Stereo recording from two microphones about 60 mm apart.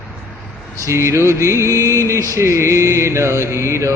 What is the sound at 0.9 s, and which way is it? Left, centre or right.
Mantra, right.